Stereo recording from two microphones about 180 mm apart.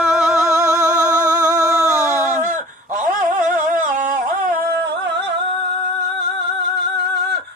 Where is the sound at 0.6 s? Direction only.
20° right (ahead or behind).